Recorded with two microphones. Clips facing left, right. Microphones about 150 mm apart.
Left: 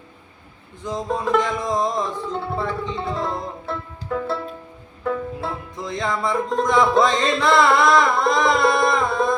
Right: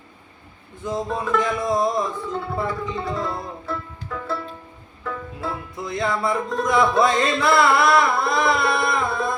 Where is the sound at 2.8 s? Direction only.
25° left (ahead or behind).